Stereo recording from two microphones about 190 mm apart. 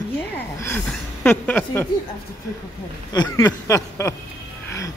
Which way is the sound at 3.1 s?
20° left (ahead or behind).